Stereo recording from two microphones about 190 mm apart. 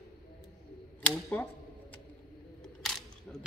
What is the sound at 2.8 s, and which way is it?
Single-lens reflex camera, centre (ahead or behind).